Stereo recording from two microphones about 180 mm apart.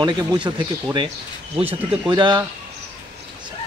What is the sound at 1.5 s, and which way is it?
Speech, 5° right (ahead or behind).